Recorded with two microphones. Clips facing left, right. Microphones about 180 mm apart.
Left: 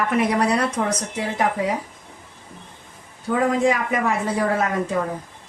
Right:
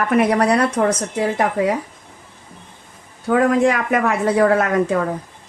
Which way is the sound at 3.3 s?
70° right (ahead or behind).